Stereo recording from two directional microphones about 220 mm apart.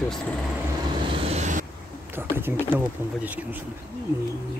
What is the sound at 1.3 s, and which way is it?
Vehicle, 35° right (ahead or behind).